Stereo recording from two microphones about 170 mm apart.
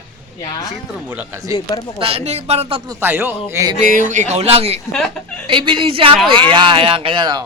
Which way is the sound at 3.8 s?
50° right (ahead or behind).